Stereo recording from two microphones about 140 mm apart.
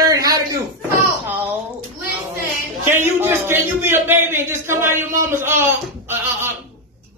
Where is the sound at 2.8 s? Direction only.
15° right (ahead or behind).